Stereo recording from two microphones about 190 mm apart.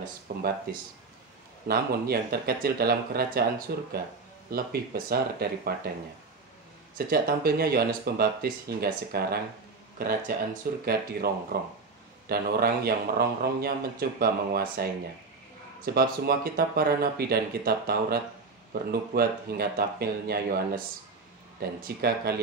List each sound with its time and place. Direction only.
0.0 s speech: 55° right (ahead or behind)
1.7 s speech: 55° right (ahead or behind)
7.1 s speech: 55° right (ahead or behind)